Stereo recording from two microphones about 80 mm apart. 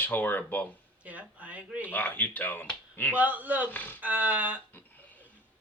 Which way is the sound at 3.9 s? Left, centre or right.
Centre.